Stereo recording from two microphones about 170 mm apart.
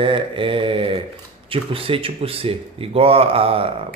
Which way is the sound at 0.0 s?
30° right (ahead or behind).